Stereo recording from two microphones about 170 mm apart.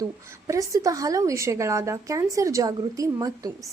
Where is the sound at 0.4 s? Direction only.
20° right (ahead or behind).